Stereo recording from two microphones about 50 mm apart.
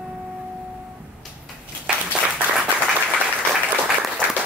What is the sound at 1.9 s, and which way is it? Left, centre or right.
Applause, centre.